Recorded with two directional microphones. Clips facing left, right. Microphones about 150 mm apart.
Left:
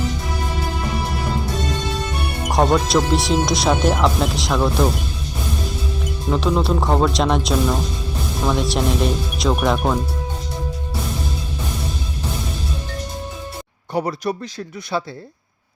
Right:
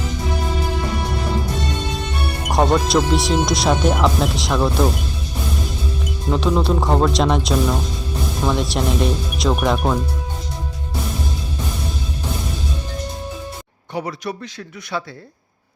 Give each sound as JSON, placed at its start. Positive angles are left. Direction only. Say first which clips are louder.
{"t": 2.5, "sound": "speech", "louder": "even", "side_deg": 0}
{"t": 6.3, "sound": "speech", "louder": "right 1 dB", "side_deg": 0}
{"t": 13.9, "sound": "speech", "louder": "left 4 dB", "side_deg": 40}